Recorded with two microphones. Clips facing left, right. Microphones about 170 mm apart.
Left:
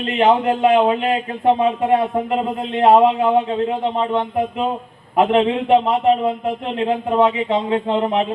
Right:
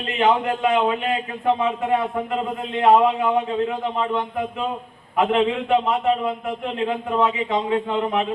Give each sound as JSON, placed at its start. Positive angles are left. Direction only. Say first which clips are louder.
{"t": 0.2, "sound": "a man's voice", "louder": "left 4 dB", "side_deg": 30}